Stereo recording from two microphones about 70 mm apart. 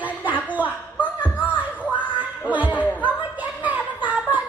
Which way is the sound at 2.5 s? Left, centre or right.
Right.